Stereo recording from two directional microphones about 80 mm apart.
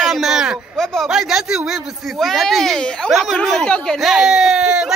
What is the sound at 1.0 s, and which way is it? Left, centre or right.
A child's voice, centre.